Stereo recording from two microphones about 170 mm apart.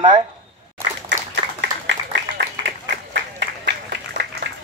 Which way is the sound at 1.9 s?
85° right.